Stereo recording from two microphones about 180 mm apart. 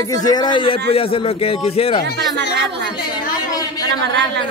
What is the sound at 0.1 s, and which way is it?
A man's voice, 20° left (ahead or behind).